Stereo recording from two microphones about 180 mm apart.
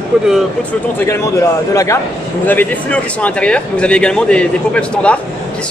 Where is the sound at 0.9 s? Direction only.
15° left (ahead or behind).